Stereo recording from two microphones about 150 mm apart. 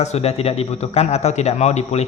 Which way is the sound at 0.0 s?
45° left (ahead or behind).